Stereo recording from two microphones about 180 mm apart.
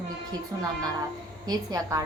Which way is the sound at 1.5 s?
20° right (ahead or behind).